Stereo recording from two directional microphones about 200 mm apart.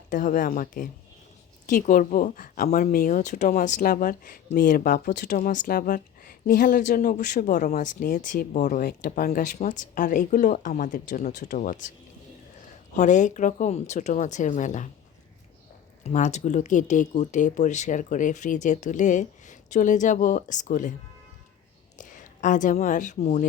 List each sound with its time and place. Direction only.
0.1 s speech: 40° left (ahead or behind)
13.0 s speech: 35° left (ahead or behind)
16.0 s speech: 35° left (ahead or behind)
21.9 s speech: 40° left (ahead or behind)